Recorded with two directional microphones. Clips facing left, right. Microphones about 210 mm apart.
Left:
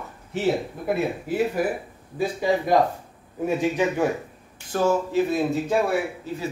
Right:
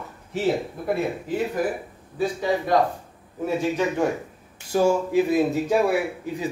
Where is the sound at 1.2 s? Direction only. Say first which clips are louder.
Left 1 dB; 10° left (ahead or behind).